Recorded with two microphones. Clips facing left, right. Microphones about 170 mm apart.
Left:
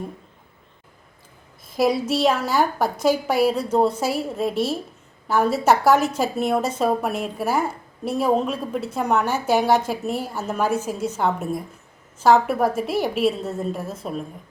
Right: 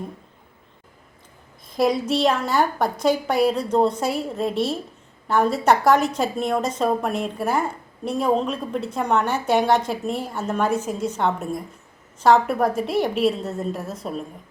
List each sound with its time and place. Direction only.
1.7 s a woman's voice: 5° left (ahead or behind)